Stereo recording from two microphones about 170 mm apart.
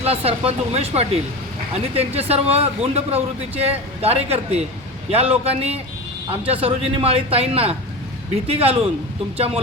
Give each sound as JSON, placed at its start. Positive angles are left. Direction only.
{"t": 0.0, "sound": "speech", "side_deg": -35}